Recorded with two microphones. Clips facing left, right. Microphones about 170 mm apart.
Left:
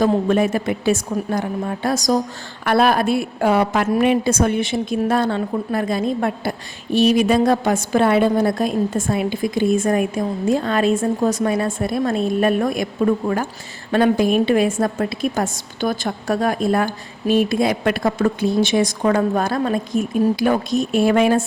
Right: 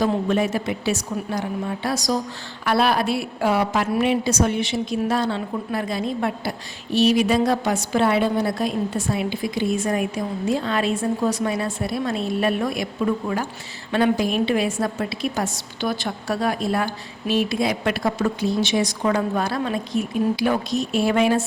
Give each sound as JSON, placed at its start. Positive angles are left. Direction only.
{"t": 0.0, "sound": "a woman's voice", "side_deg": 50}